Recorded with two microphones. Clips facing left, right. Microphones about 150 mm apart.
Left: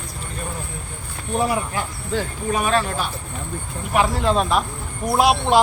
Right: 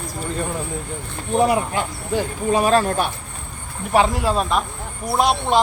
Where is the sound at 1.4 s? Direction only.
20° right (ahead or behind).